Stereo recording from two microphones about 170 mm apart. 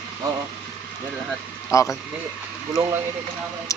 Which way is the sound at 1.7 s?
20° left (ahead or behind).